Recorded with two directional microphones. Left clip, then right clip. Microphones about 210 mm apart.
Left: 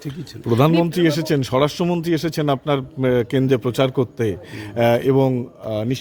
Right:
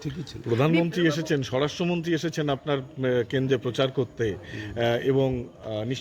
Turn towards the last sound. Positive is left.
turn(degrees=55)  # may be behind; listen again after turning